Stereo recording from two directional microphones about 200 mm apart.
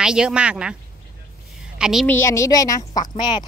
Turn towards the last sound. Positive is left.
turn(degrees=20)  # may be behind; listen again after turning